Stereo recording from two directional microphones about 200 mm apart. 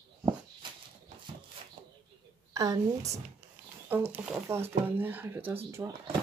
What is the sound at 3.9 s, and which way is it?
Speech, 10° right (ahead or behind).